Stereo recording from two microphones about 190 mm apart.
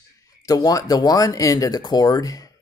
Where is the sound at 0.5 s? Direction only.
20° left (ahead or behind).